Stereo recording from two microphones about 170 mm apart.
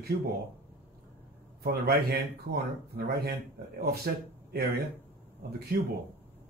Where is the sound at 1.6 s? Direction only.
65° right (ahead or behind).